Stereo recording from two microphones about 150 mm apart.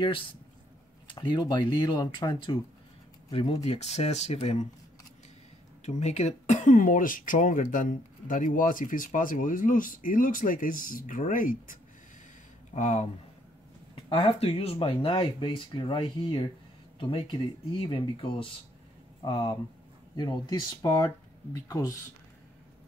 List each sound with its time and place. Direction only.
1.0 s speech: 30° left (ahead or behind)
5.9 s speech: 45° left (ahead or behind); by 11.8 s 65° left (ahead or behind)
12.7 s speech: 50° left (ahead or behind)
13.9 s speech: 35° left (ahead or behind)